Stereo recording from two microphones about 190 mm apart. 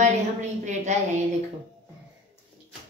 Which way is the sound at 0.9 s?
35° right (ahead or behind).